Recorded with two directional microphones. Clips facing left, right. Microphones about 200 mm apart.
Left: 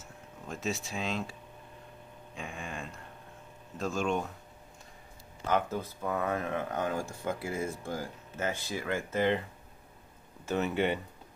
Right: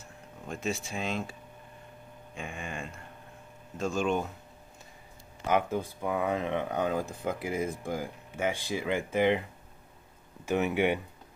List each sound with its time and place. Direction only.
0.0 s speech: centre (ahead or behind)
2.3 s speech: centre (ahead or behind)
5.5 s speech: 15° right (ahead or behind)
10.4 s speech: 15° right (ahead or behind)